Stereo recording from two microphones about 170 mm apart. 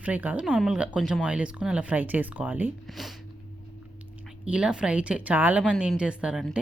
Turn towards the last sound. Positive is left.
turn(degrees=-5)  # may be behind; listen again after turning